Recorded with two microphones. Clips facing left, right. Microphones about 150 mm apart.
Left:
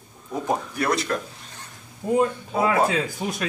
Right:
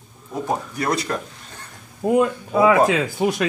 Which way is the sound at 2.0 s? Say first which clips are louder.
Right 3 dB; 75° right (ahead or behind).